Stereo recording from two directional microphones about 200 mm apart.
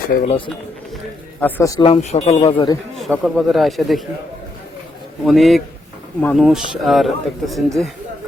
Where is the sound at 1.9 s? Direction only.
30° left (ahead or behind).